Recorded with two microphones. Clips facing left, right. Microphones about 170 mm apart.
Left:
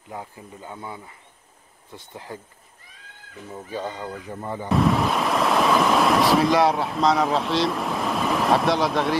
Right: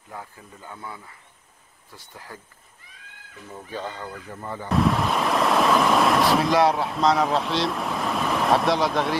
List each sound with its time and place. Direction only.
0.1 s speech: 20° left (ahead or behind)
3.5 s speech: 15° left (ahead or behind)
4.6 s speech: centre (ahead or behind)